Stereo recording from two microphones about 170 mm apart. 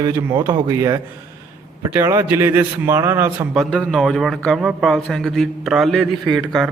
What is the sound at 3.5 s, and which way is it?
A man's voice, centre (ahead or behind).